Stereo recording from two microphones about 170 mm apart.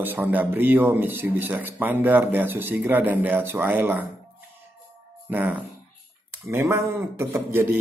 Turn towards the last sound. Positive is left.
turn(degrees=-15)  # may be behind; listen again after turning